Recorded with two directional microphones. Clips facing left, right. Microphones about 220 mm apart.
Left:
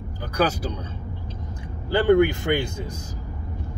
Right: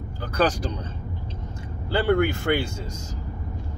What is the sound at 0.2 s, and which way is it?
Speech, 10° left (ahead or behind).